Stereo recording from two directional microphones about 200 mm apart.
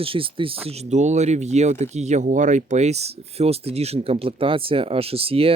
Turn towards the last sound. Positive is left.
turn(degrees=-30)  # may be behind; listen again after turning